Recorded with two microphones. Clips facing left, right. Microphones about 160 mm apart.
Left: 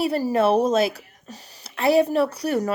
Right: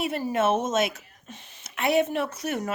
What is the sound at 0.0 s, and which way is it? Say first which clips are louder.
Speech: left 5 dB; 35° left (ahead or behind).